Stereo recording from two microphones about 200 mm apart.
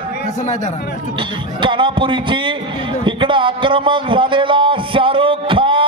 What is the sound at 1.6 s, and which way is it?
Speech, 25° right (ahead or behind).